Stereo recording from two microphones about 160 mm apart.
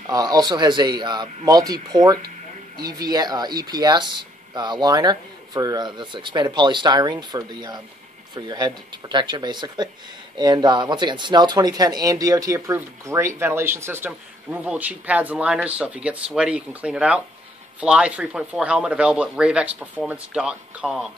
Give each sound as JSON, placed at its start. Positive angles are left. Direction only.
{"t": 0.0, "sound": "speech", "side_deg": -25}